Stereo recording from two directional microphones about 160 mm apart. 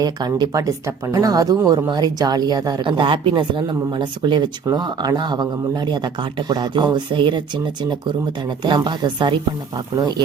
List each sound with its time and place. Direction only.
0.0 s speech: 25° right (ahead or behind)